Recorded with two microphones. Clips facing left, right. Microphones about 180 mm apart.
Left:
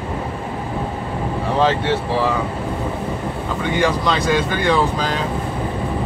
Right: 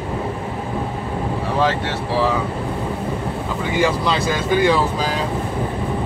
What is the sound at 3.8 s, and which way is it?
Speech, 5° right (ahead or behind).